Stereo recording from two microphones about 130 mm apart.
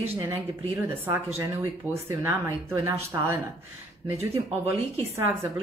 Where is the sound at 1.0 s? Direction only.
20° right (ahead or behind).